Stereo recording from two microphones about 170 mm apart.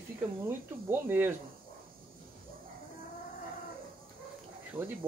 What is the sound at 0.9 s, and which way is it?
Speech, 10° right (ahead or behind).